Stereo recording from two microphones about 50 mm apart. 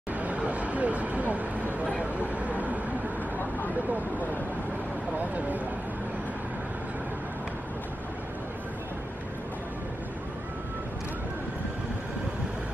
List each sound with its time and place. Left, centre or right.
0.1 s vehicle: right
5.2 s speech: right